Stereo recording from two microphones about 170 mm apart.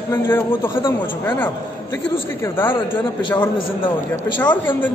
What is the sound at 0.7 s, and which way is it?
Speech, 30° left (ahead or behind).